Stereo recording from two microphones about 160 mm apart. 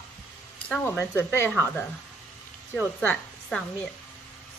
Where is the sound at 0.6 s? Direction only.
15° left (ahead or behind).